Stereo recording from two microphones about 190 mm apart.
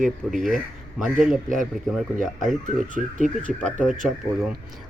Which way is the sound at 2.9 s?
40° right (ahead or behind).